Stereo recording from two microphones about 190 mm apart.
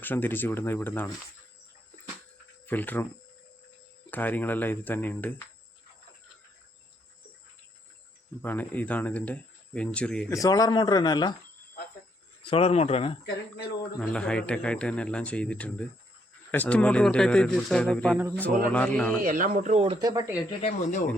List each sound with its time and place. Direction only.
0.0 s speech: 10° left (ahead or behind)
2.6 s speech: 10° left (ahead or behind)
4.1 s speech: 10° left (ahead or behind)
8.4 s speech: 10° left (ahead or behind)
10.3 s speech: 20° left (ahead or behind)
12.5 s speech: 30° left (ahead or behind)
14.0 s speech: 5° left (ahead or behind)
19.2 s speech: 45° right (ahead or behind)
20.0 s speech: 20° right (ahead or behind)
20.6 s speech: 35° left (ahead or behind)